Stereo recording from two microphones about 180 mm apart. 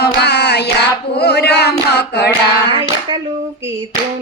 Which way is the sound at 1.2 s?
65° left (ahead or behind).